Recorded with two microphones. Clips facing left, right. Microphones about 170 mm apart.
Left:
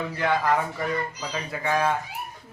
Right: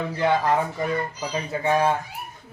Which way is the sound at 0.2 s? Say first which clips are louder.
Right 2 dB; 25° right (ahead or behind).